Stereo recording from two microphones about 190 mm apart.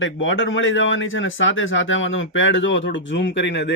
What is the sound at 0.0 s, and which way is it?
Speech, 85° left.